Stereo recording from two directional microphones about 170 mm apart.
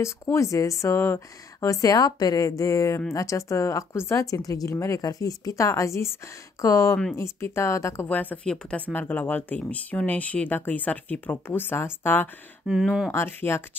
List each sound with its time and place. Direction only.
0.0 s speech: 15° left (ahead or behind)
12.6 s speech: 5° right (ahead or behind)
13.1 s speech: 15° left (ahead or behind)